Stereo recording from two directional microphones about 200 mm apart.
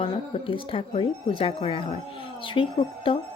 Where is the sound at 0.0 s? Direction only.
25° left (ahead or behind).